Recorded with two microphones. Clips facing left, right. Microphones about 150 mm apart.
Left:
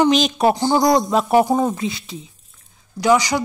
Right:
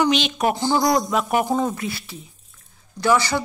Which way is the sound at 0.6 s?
30° left (ahead or behind).